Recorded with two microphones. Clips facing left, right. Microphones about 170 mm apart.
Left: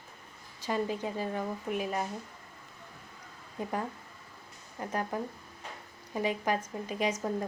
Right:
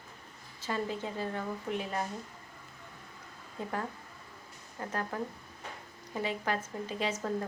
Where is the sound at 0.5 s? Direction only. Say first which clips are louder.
Left 3 dB; 15° left (ahead or behind).